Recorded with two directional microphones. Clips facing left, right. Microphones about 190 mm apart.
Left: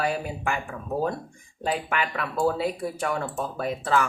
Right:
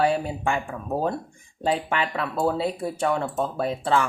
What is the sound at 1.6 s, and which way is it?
Speech, 30° right (ahead or behind).